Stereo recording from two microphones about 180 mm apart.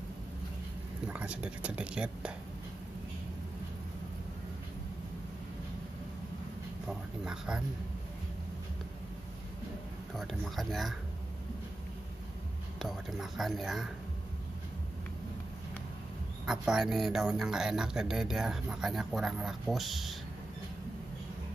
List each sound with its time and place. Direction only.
1.0 s speech: 5° right (ahead or behind)
6.9 s a sound: 5° right (ahead or behind)
10.1 s speech: centre (ahead or behind)
12.7 s speech: centre (ahead or behind)
16.4 s speech: 5° right (ahead or behind)